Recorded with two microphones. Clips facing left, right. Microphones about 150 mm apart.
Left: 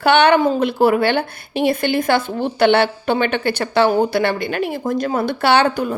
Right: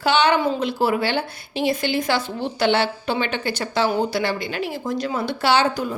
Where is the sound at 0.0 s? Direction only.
60° left (ahead or behind).